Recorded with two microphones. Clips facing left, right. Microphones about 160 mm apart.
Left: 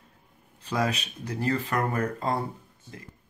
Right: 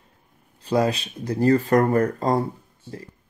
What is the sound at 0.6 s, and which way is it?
Speech, 35° right (ahead or behind).